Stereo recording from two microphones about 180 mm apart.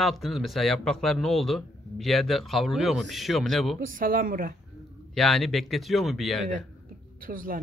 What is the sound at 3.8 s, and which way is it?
Speech, 50° right (ahead or behind).